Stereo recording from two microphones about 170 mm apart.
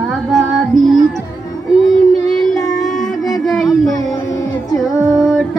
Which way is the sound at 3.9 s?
20° left (ahead or behind).